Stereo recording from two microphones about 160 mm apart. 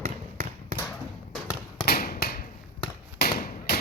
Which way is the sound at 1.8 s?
70° left (ahead or behind).